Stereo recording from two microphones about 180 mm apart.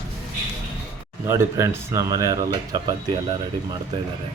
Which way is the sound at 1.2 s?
15° right (ahead or behind).